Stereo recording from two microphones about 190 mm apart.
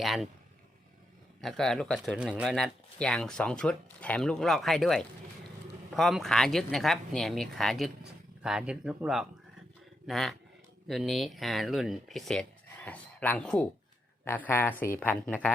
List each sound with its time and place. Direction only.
0.0 s speech: centre (ahead or behind)
1.4 s speech: centre (ahead or behind)